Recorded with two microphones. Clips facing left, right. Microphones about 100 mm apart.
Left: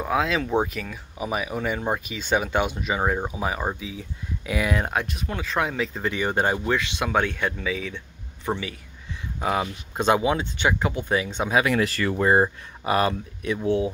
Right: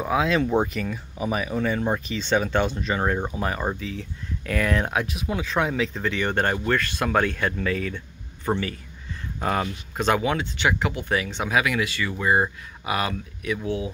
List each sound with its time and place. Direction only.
0.0 s speech: centre (ahead or behind)
9.9 s speech: 20° left (ahead or behind)
11.5 s speech: 35° left (ahead or behind)
12.4 s speech: 35° left (ahead or behind)